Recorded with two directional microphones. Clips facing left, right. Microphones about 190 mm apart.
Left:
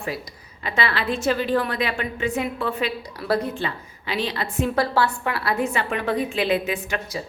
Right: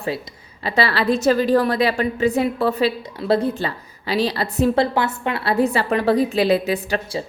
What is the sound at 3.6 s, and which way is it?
A woman's voice, 35° right (ahead or behind).